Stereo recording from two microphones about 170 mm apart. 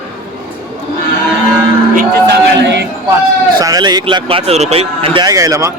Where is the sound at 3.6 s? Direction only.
20° right (ahead or behind).